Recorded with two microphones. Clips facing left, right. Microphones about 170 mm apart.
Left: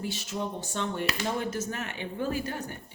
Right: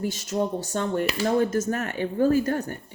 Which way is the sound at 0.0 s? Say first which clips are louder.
Right 7 dB; 45° right (ahead or behind).